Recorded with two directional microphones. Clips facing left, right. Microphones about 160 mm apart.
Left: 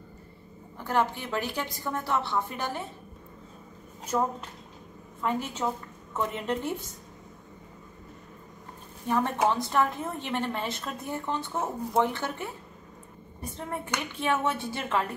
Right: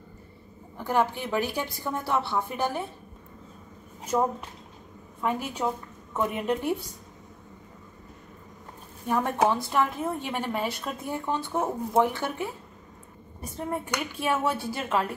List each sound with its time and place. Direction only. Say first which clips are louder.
0.8 s a woman's voice: right 2 dB; 10° right (ahead or behind)
4.1 s a woman's voice: right 2 dB; 15° right (ahead or behind)
9.0 s a woman's voice: right 1 dB; 10° right (ahead or behind)